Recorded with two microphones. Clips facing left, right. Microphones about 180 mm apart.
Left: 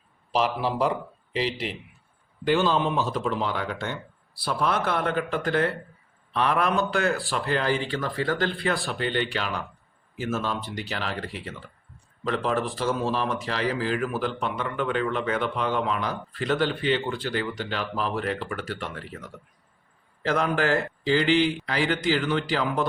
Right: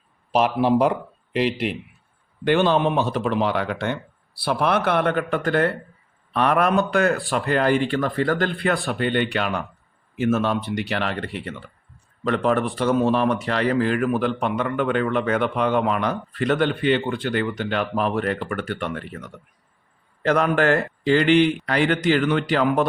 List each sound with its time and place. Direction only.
0.3 s a man's voice: 55° right (ahead or behind)
20.2 s speech: 65° right (ahead or behind)